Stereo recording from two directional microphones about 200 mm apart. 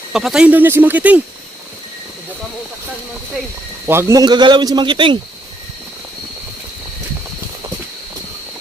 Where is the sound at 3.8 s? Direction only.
15° right (ahead or behind).